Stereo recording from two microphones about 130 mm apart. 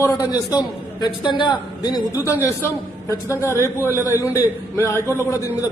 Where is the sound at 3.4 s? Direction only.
20° left (ahead or behind).